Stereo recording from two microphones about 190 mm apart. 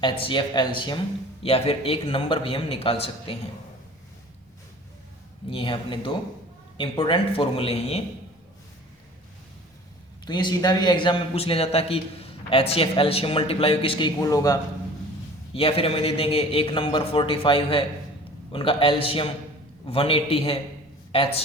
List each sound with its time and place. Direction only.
0.0 s a man's voice: 25° left (ahead or behind)
5.5 s a man's voice: 30° left (ahead or behind)
10.2 s a man's voice: 20° left (ahead or behind)
15.5 s a man's voice: 30° left (ahead or behind)